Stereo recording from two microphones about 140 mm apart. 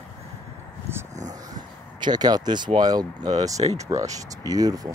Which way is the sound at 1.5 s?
30° right (ahead or behind).